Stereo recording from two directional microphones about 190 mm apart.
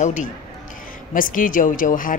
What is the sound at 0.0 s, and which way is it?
A woman's voice, 40° left (ahead or behind).